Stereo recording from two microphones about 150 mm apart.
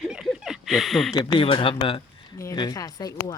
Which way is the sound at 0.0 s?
5° right (ahead or behind).